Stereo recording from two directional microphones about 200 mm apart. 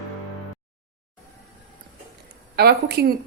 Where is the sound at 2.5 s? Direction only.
50° right (ahead or behind).